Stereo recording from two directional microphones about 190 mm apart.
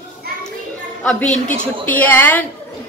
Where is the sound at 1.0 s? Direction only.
5° left (ahead or behind).